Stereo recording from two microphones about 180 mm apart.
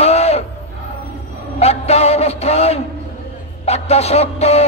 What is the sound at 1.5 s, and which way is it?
Speech, 35° left (ahead or behind).